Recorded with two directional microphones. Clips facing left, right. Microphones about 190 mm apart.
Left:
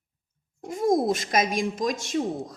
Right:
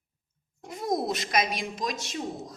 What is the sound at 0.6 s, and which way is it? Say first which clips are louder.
A woman's voice: left 6 dB; 45° left (ahead or behind).